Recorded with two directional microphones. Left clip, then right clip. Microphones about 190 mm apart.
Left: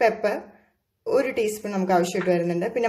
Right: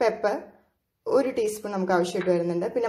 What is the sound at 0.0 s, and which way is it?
A woman's voice, centre (ahead or behind).